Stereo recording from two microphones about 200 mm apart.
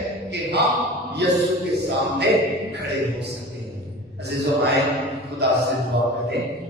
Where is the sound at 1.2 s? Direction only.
55° right (ahead or behind).